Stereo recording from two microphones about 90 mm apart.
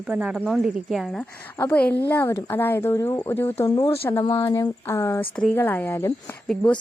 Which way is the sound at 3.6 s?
55° left (ahead or behind).